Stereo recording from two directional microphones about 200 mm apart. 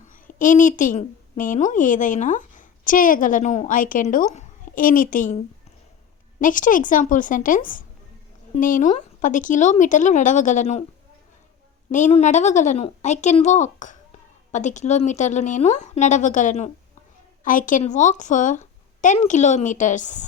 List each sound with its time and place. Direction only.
0.1 s a woman's voice: 40° left (ahead or behind)
6.4 s a woman's voice: 40° left (ahead or behind)
11.9 s a woman's voice: 35° left (ahead or behind)